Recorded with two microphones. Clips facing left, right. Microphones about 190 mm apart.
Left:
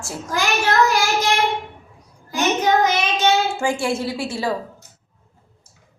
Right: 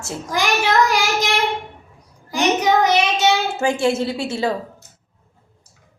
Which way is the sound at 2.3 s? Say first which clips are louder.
Right 1 dB; 15° right (ahead or behind).